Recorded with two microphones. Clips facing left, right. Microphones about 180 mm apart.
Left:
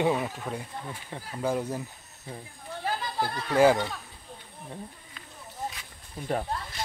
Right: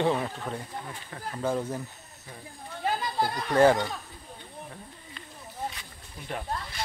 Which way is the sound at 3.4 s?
10° left (ahead or behind).